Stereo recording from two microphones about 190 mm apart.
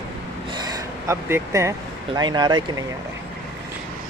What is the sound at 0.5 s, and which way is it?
Speech, 20° right (ahead or behind).